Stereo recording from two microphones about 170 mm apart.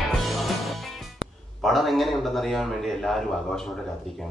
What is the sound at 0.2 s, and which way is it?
Music, centre (ahead or behind).